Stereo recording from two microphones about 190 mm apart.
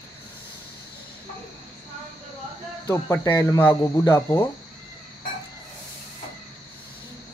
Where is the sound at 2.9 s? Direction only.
15° left (ahead or behind).